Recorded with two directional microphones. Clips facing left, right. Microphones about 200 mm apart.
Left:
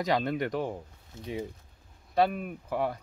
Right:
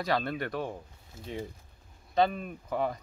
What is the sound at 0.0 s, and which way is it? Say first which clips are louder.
Speech: left 3 dB; 15° left (ahead or behind).